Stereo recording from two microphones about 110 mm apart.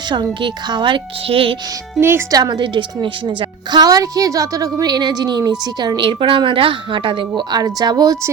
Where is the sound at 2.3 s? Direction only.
40° right (ahead or behind).